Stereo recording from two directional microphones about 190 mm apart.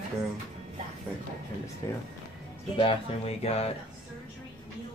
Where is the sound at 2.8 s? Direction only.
30° left (ahead or behind).